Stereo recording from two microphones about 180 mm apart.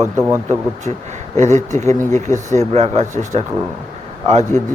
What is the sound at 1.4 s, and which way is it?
Speech, 40° right (ahead or behind).